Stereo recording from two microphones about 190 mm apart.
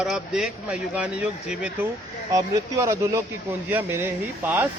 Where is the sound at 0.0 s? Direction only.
5° right (ahead or behind).